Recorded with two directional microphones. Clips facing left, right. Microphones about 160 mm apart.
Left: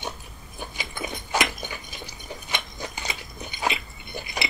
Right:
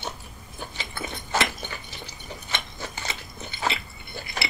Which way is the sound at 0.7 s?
15° left (ahead or behind).